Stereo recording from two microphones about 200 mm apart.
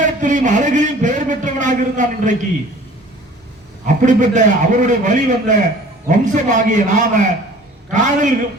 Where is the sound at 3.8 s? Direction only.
40° right (ahead or behind).